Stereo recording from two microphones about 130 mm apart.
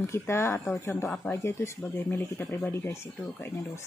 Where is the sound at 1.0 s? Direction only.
5° left (ahead or behind).